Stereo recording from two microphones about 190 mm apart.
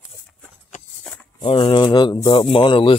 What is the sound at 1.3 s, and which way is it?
Speech, 30° left (ahead or behind).